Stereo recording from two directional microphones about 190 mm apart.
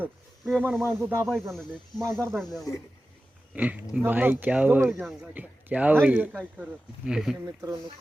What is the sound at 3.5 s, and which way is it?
Speech, 10° right (ahead or behind).